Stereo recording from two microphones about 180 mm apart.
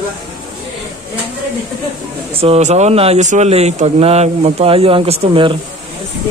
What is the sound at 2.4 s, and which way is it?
Speech, 35° right (ahead or behind).